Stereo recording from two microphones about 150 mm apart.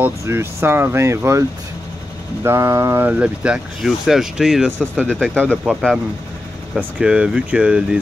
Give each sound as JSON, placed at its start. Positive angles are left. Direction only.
{"t": 0.0, "sound": "speech", "side_deg": -15}
{"t": 2.4, "sound": "speech", "side_deg": -20}
{"t": 6.8, "sound": "speech", "side_deg": -10}